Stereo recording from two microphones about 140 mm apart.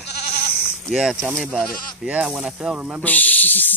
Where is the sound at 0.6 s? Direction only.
Centre (ahead or behind).